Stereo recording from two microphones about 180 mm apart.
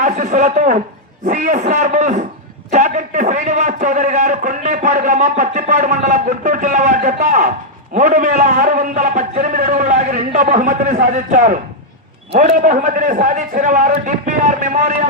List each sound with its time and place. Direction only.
0.0 s a man's voice: 40° right (ahead or behind)
9.6 s a man's voice: 55° right (ahead or behind)
10.3 s a man's voice: 45° right (ahead or behind)